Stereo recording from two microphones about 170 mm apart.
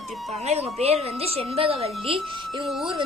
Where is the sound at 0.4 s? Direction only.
40° right (ahead or behind).